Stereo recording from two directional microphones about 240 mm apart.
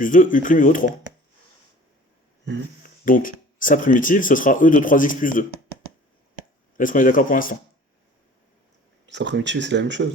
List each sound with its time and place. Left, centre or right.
0.0 s speech: left
3.0 s speech: left
6.7 s speech: left
9.0 s speech: right